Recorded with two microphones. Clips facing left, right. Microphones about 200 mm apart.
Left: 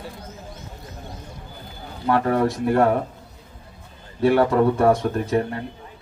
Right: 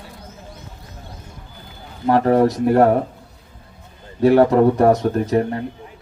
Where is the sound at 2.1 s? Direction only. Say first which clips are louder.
Right 5 dB; 35° right (ahead or behind).